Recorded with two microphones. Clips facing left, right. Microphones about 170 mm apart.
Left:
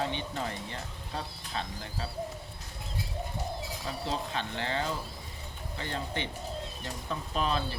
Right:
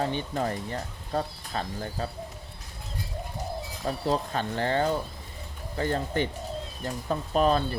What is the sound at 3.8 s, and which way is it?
Speech, 45° right (ahead or behind).